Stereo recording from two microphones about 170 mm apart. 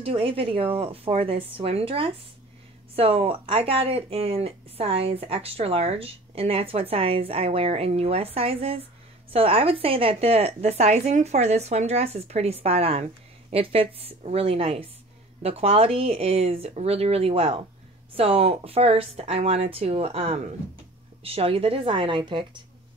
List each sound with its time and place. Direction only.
0.0 s speech: 30° right (ahead or behind)